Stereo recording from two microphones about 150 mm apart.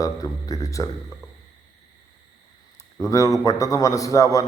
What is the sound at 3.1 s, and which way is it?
A man's voice, 20° left (ahead or behind).